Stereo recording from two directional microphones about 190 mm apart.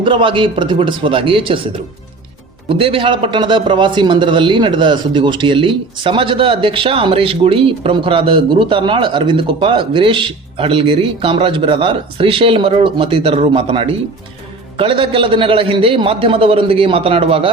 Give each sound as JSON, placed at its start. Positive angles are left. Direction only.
{"t": 0.0, "sound": "a man's voice", "side_deg": -25}